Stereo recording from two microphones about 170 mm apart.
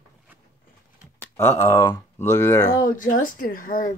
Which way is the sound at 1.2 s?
15° left (ahead or behind).